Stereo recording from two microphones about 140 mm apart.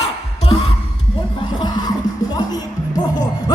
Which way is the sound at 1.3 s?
30° left (ahead or behind).